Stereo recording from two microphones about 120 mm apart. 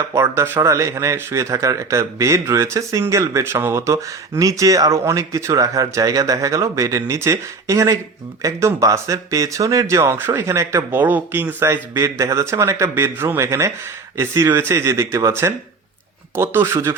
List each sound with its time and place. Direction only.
0.0 s speech: 20° right (ahead or behind)